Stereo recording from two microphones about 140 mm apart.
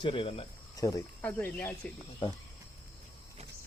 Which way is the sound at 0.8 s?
25° left (ahead or behind).